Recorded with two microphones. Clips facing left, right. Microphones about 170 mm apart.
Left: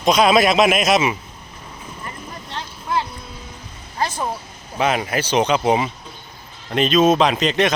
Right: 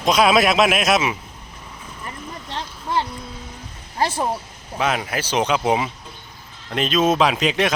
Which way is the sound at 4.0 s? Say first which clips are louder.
Right 2 dB; 30° right (ahead or behind).